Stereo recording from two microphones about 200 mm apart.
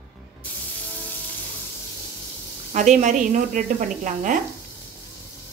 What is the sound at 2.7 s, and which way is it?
Speech, 40° right (ahead or behind).